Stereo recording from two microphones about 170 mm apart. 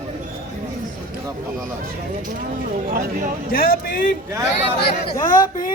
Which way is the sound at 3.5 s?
60° left (ahead or behind).